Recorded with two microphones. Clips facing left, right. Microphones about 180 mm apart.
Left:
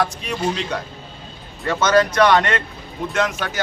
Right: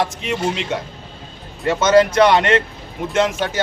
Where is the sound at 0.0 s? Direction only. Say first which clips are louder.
Right 1 dB; 20° right (ahead or behind).